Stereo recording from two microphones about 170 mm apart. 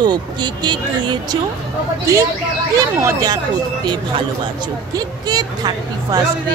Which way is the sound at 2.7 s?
20° right (ahead or behind).